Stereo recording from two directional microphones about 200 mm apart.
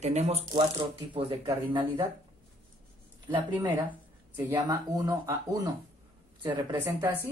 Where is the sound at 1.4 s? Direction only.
20° right (ahead or behind).